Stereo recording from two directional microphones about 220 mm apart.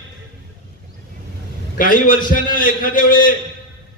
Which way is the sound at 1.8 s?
40° left (ahead or behind).